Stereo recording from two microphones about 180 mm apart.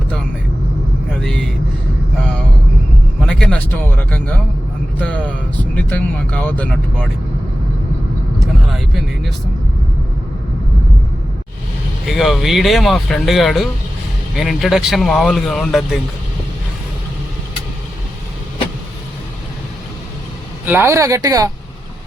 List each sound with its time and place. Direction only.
1.1 s vehicle: 5° left (ahead or behind)
3.2 s a sound: 5° left (ahead or behind)
4.9 s speech: 10° left (ahead or behind)
8.7 s speech: centre (ahead or behind)
12.0 s speech: centre (ahead or behind)
20.7 s a woman's voice: 15° right (ahead or behind)